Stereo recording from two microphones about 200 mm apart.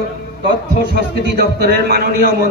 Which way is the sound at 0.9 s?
55° right (ahead or behind).